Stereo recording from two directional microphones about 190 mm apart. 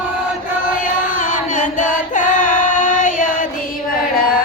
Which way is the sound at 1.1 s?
45° left (ahead or behind).